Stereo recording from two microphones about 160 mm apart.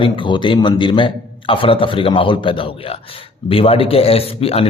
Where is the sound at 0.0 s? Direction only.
30° left (ahead or behind).